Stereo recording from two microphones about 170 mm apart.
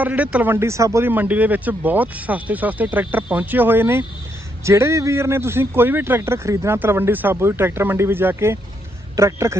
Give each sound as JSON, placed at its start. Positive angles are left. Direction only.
{"t": 0.0, "sound": "speech", "side_deg": -10}